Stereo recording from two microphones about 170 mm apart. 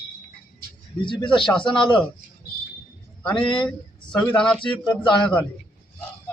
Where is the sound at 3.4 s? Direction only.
30° left (ahead or behind).